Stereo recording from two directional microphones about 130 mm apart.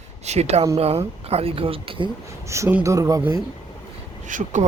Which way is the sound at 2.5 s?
20° right (ahead or behind).